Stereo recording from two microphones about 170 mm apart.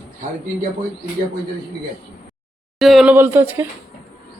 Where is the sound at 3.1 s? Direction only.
15° right (ahead or behind).